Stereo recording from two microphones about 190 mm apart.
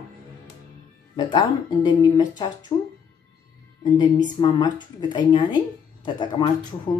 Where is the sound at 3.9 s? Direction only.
25° left (ahead or behind).